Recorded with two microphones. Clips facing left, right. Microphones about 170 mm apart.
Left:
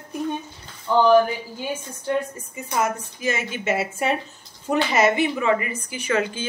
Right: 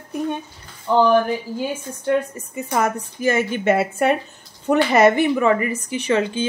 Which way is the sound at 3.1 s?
50° right (ahead or behind).